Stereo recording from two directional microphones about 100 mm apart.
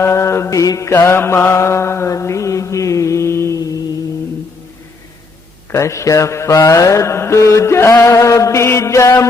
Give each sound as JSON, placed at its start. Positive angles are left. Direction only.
{"t": 0.0, "sound": "mantra", "side_deg": 30}
{"t": 5.7, "sound": "speech", "side_deg": 30}
{"t": 6.7, "sound": "mantra", "side_deg": 30}